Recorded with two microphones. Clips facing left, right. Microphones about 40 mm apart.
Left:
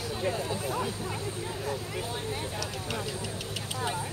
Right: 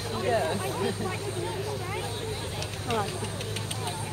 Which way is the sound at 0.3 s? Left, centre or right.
Right.